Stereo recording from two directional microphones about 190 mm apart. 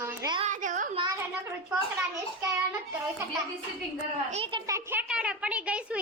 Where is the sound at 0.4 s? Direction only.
40° right (ahead or behind).